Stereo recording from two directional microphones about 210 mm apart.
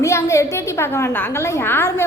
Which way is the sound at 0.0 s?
15° left (ahead or behind).